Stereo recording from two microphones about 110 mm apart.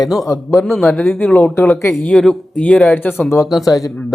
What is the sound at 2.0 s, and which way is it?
Speech, 5° left (ahead or behind).